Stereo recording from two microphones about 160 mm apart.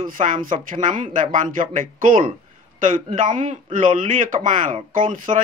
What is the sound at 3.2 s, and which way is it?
A man's voice, 55° right (ahead or behind).